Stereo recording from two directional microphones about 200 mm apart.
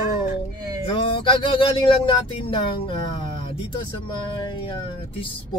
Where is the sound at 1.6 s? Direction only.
25° left (ahead or behind).